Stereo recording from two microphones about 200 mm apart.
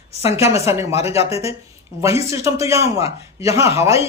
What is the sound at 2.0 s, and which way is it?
Speech, 15° right (ahead or behind).